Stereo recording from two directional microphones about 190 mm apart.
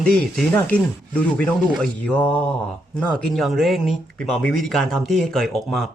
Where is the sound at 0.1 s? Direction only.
5° left (ahead or behind).